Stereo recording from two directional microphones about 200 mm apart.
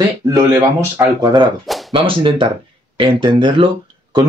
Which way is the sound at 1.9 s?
25° right (ahead or behind).